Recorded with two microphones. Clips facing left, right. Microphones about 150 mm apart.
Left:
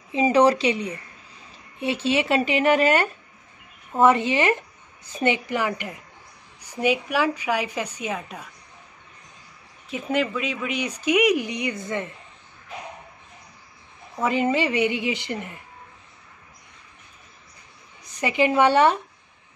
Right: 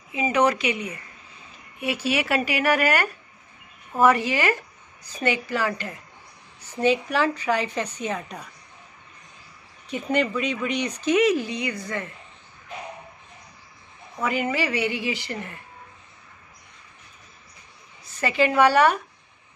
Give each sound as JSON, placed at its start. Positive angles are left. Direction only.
{"t": 0.1, "sound": "a woman's voice", "side_deg": 30}
{"t": 9.8, "sound": "speech", "side_deg": 0}
{"t": 14.2, "sound": "a woman's voice", "side_deg": 25}
{"t": 18.0, "sound": "a woman's voice", "side_deg": 20}